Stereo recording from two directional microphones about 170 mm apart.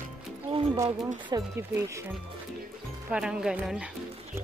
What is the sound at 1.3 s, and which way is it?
Speech, 15° right (ahead or behind).